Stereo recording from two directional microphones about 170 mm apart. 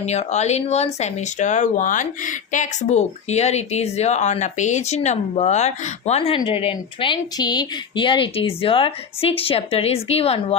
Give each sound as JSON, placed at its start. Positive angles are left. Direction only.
{"t": 0.0, "sound": "speech", "side_deg": 40}